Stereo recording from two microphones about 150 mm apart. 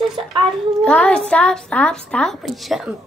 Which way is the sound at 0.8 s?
5° left (ahead or behind).